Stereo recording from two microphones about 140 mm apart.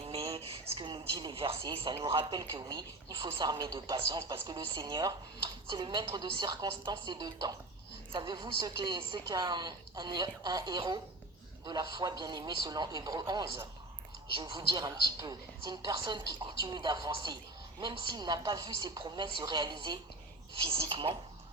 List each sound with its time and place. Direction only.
0.3 s a woman's voice: 45° right (ahead or behind)